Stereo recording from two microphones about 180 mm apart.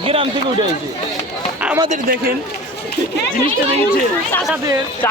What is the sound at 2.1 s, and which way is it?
Speech, 55° right (ahead or behind).